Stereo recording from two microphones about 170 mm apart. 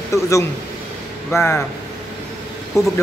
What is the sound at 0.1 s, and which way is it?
Speech, 20° left (ahead or behind).